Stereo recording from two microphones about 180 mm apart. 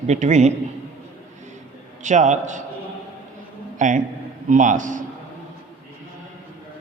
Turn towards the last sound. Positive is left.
turn(degrees=-45)  # may be behind; listen again after turning